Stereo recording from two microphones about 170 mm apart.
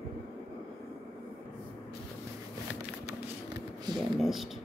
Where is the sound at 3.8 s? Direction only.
25° right (ahead or behind).